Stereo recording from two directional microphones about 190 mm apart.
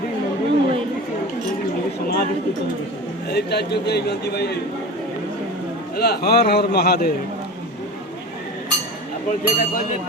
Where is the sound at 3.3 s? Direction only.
60° left (ahead or behind).